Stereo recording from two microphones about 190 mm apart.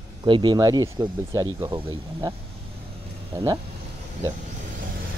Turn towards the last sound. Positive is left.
turn(degrees=-20)  # may be behind; listen again after turning